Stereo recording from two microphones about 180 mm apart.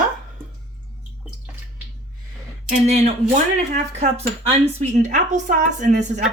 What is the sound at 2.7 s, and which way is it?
Speech, 40° right (ahead or behind).